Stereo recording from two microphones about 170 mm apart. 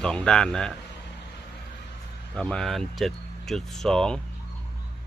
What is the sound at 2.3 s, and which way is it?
Speech, 5° left (ahead or behind).